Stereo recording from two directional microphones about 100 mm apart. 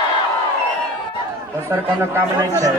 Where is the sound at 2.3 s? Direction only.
35° right (ahead or behind).